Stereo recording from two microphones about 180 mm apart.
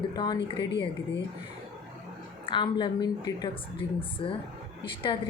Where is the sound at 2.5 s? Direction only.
25° left (ahead or behind).